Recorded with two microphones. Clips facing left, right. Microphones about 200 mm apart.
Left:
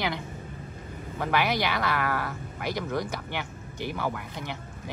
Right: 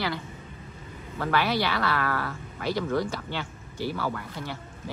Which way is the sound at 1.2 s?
15° left (ahead or behind).